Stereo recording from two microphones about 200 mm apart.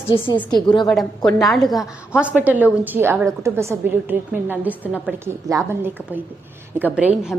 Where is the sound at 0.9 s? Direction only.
Centre (ahead or behind).